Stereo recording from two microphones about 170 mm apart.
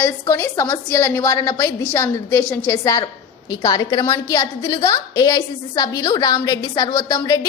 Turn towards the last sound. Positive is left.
turn(degrees=20)  # may be behind; listen again after turning